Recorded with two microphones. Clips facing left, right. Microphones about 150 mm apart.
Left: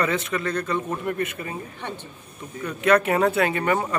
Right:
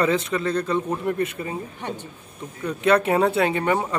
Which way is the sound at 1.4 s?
15° right (ahead or behind).